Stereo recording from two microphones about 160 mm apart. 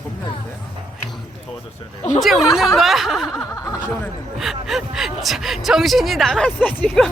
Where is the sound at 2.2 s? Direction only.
Centre (ahead or behind).